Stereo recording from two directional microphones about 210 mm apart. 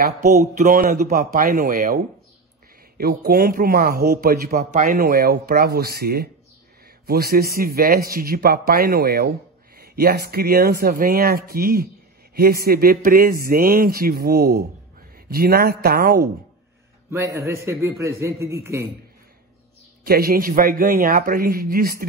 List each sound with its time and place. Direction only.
0.4 s a man's voice: 40° right (ahead or behind)
17.1 s a man's voice: 15° right (ahead or behind)
20.1 s a man's voice: 45° right (ahead or behind)